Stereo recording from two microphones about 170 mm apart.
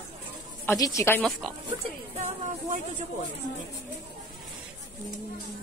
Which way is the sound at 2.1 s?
40° right (ahead or behind).